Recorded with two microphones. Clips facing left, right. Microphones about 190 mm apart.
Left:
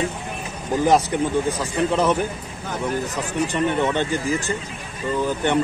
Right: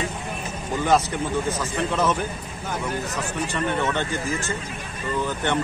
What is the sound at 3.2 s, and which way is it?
Speech, 15° left (ahead or behind).